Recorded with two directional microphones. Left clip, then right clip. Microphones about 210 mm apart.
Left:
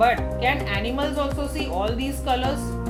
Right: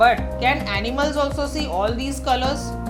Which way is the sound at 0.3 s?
30° right (ahead or behind).